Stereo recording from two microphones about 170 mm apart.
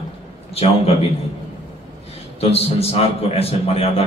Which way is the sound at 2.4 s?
35° left (ahead or behind).